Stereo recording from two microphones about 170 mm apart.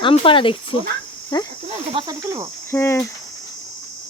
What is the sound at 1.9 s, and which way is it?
Speech, 30° right (ahead or behind).